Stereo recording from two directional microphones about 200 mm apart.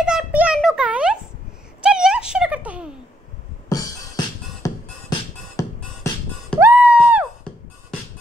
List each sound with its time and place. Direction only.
0.0 s a sound: 5° right (ahead or behind)
3.6 s music: 20° left (ahead or behind)
6.6 s music: 5° right (ahead or behind)